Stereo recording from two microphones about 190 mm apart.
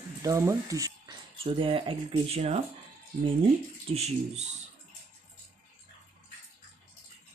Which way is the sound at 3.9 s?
35° right (ahead or behind).